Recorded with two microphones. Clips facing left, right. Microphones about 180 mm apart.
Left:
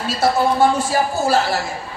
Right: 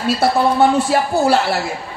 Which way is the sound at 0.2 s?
65° right (ahead or behind).